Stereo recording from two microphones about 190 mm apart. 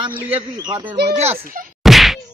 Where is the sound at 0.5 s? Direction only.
25° right (ahead or behind).